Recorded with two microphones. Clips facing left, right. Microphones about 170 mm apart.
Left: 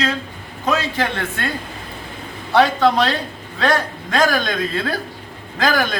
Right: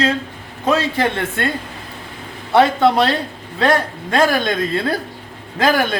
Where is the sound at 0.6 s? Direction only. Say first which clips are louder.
Right 3 dB; 25° right (ahead or behind).